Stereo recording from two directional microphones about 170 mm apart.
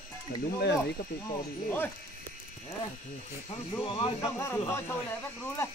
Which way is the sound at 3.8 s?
30° left (ahead or behind).